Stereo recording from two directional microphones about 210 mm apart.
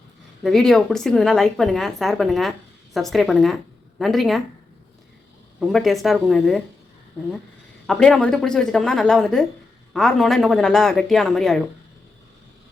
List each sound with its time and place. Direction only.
0.4 s a woman's voice: centre (ahead or behind)
5.5 s a woman's voice: centre (ahead or behind)
7.9 s a woman's voice: 5° left (ahead or behind)